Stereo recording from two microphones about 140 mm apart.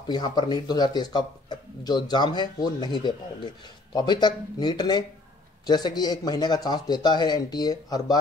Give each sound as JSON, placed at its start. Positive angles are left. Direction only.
{"t": 0.0, "sound": "speech", "side_deg": 30}